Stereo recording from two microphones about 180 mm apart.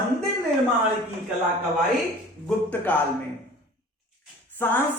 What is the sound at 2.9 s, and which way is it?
Speech, 10° left (ahead or behind).